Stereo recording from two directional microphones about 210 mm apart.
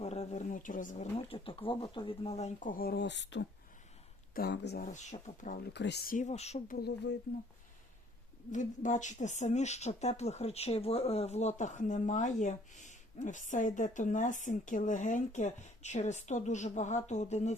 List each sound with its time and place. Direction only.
0.0 s speech: 30° left (ahead or behind); by 4.9 s 50° left (ahead or behind)
4.9 s speech: 35° left (ahead or behind)
5.7 s speech: 55° left (ahead or behind); by 6.7 s 30° left (ahead or behind)
6.7 s speech: 55° left (ahead or behind)
8.5 s speech: 35° left (ahead or behind)